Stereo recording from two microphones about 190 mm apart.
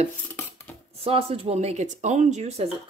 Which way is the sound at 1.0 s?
30° right (ahead or behind).